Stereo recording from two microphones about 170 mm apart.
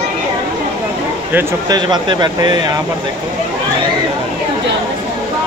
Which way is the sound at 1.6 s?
25° right (ahead or behind).